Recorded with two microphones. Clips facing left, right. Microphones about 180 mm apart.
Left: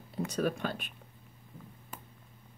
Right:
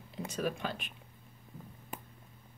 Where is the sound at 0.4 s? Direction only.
50° left (ahead or behind).